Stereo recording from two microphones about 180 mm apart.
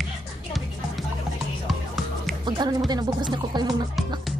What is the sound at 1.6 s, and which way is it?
Music, centre (ahead or behind).